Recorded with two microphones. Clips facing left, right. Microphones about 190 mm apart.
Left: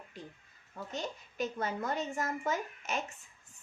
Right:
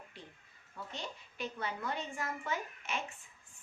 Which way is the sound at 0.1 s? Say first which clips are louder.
Left 7 dB; 40° left (ahead or behind).